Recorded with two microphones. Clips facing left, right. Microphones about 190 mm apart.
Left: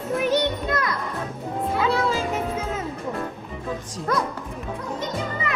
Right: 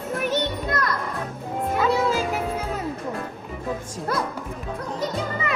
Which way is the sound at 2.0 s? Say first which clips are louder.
Right 1 dB; centre (ahead or behind).